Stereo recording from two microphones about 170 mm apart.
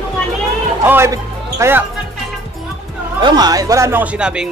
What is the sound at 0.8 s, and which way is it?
Speech, 15° right (ahead or behind).